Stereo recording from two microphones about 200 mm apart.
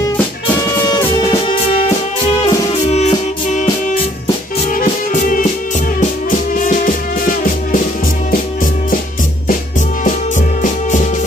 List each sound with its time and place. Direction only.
0.8 s music: 20° left (ahead or behind)
2.4 s music: 35° left (ahead or behind)
4.6 s music: 40° left (ahead or behind)
6.5 s music: 40° left (ahead or behind)
9.5 s music: 40° left (ahead or behind)